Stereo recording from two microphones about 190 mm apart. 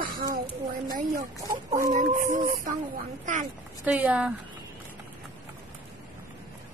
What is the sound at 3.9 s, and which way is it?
Speech, 5° right (ahead or behind).